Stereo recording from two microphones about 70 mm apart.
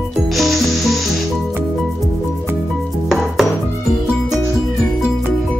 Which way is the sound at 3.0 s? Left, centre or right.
Centre.